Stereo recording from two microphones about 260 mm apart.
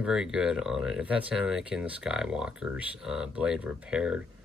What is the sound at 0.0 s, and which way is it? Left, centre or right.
Speech, centre.